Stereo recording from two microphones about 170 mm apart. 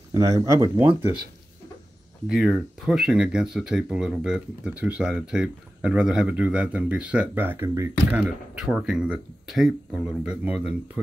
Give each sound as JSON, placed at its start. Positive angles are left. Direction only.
{"t": 0.1, "sound": "speech", "side_deg": -20}
{"t": 2.2, "sound": "speech", "side_deg": -5}
{"t": 8.1, "sound": "speech", "side_deg": -5}